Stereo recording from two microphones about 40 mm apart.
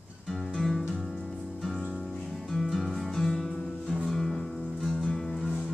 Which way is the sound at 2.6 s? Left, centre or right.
Centre.